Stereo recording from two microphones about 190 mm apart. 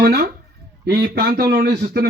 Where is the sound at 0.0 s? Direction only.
55° right (ahead or behind).